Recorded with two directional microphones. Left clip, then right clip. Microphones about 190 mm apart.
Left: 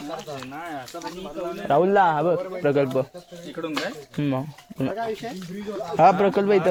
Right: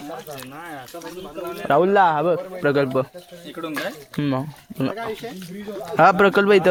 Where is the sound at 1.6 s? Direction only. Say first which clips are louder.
Right 2 dB; 25° right (ahead or behind).